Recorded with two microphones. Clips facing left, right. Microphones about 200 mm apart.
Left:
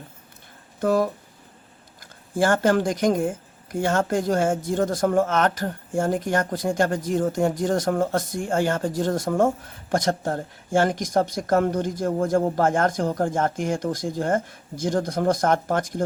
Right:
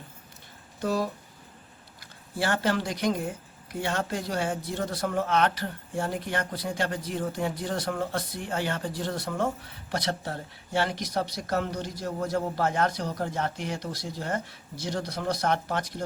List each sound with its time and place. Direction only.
0.8 s speech: 50° left (ahead or behind)